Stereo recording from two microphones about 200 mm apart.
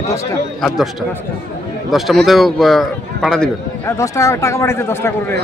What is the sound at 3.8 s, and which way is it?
Speech, 15° left (ahead or behind).